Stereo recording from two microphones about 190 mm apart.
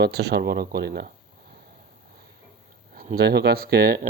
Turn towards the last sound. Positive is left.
turn(degrees=-50)  # may be behind; listen again after turning